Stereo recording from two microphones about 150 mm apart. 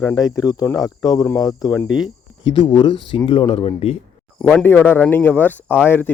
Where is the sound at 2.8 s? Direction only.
35° left (ahead or behind).